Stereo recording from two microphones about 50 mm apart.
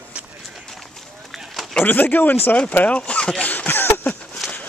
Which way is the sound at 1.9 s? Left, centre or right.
Left.